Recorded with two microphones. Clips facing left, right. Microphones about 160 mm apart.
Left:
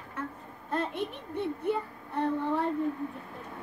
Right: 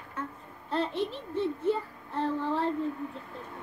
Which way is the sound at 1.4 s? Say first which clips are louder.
Right 2 dB; 60° left (ahead or behind).